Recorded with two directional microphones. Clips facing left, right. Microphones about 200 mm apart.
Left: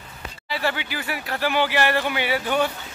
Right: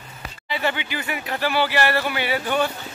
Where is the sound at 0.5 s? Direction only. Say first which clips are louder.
Right 1 dB; centre (ahead or behind).